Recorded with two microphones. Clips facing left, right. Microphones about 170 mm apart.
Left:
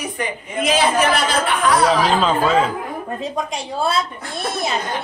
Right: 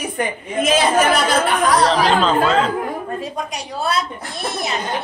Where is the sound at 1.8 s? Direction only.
5° left (ahead or behind).